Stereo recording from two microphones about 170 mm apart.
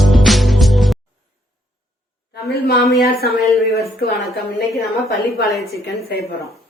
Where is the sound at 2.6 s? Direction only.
70° left (ahead or behind).